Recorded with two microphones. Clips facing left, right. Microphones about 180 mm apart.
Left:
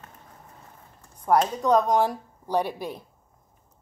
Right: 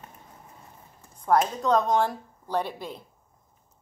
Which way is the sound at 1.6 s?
10° left (ahead or behind).